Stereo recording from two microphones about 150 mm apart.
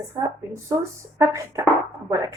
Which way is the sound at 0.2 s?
25° right (ahead or behind).